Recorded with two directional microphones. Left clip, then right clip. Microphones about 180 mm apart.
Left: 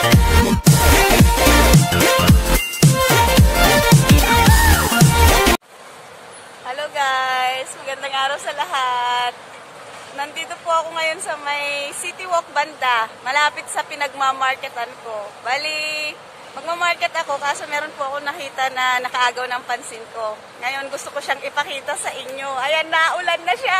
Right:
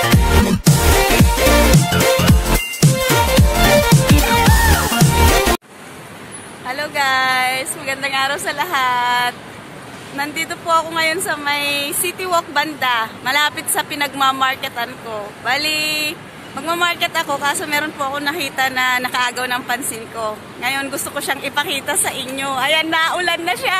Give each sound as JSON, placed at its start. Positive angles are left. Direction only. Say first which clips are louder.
{"t": 0.0, "sound": "music", "louder": "even", "side_deg": 0}
{"t": 6.7, "sound": "a sound", "louder": "right 3 dB", "side_deg": 0}
{"t": 10.1, "sound": "a woman's voice", "louder": "right 5 dB", "side_deg": 5}